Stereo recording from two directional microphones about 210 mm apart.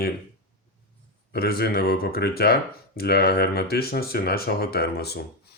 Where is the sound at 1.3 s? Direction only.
50° left (ahead or behind).